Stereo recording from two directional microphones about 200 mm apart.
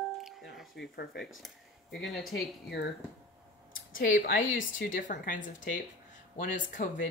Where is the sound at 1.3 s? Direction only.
Centre (ahead or behind).